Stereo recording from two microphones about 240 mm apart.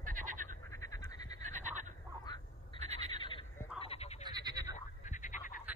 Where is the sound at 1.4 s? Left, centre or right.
Right.